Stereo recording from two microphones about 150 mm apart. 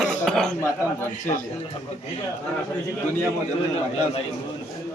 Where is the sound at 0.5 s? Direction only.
20° left (ahead or behind).